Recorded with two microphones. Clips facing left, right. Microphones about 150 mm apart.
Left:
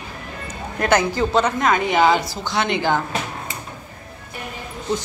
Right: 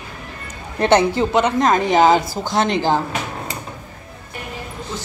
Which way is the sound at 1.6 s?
40° right (ahead or behind).